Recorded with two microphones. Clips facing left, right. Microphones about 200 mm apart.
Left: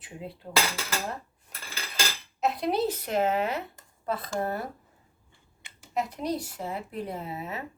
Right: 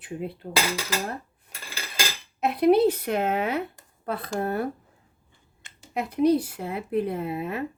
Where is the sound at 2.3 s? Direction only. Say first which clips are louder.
Right 8 dB; 60° right (ahead or behind).